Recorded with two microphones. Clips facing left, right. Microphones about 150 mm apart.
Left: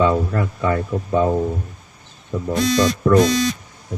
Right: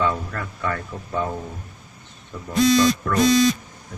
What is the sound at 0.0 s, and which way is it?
Speech, 25° left (ahead or behind).